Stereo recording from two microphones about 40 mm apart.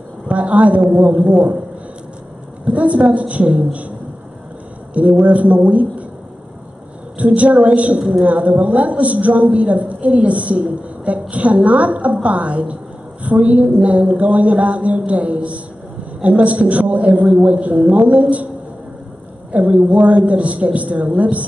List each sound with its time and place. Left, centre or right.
0.3 s a woman's voice: right
2.6 s a woman's voice: right
4.9 s a woman's voice: right
7.2 s a woman's voice: right
19.5 s a woman's voice: right